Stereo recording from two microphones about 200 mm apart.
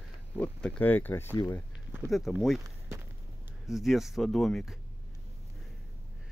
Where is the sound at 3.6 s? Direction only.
Centre (ahead or behind).